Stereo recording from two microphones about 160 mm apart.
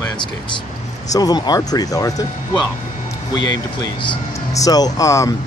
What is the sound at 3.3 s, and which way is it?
Speech, 25° left (ahead or behind).